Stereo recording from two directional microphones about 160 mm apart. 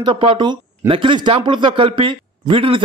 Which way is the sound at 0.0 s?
35° right (ahead or behind).